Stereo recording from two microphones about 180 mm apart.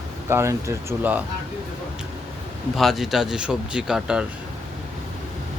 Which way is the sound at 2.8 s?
Centre (ahead or behind).